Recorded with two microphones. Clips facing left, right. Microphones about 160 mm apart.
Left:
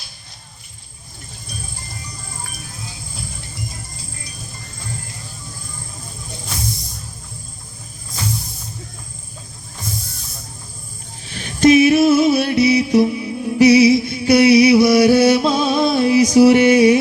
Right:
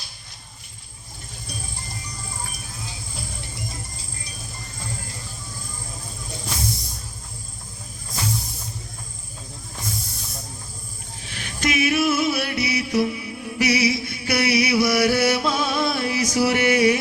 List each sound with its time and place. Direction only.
11.3 s music: 30° left (ahead or behind)